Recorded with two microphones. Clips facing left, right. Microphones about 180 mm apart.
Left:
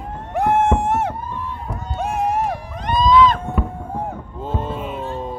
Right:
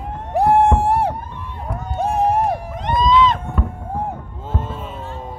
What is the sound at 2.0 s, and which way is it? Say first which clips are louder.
Music: right 3 dB; 35° right (ahead or behind).